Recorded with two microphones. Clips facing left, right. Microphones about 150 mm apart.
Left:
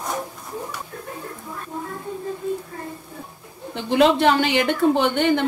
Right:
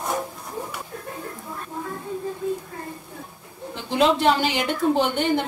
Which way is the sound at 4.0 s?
65° left (ahead or behind).